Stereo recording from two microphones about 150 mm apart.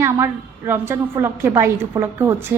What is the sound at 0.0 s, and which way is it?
A woman's voice, 15° right (ahead or behind).